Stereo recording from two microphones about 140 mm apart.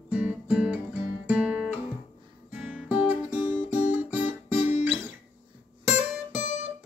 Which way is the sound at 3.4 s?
60° left (ahead or behind).